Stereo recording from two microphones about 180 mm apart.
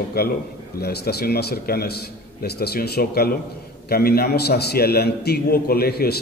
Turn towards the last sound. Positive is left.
turn(degrees=60)  # may be behind; listen again after turning